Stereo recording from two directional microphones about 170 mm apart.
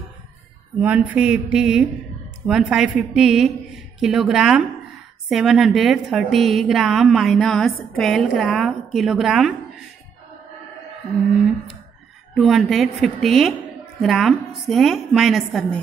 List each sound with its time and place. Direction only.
0.7 s a woman's voice: 10° right (ahead or behind)
12.4 s a woman's voice: centre (ahead or behind)